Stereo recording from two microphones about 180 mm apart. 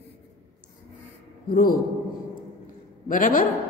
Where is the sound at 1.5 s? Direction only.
55° left (ahead or behind).